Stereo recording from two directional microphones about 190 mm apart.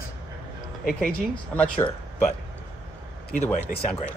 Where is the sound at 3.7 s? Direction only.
45° left (ahead or behind).